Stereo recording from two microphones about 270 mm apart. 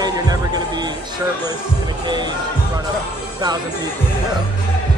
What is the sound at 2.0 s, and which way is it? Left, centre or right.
Speech, centre.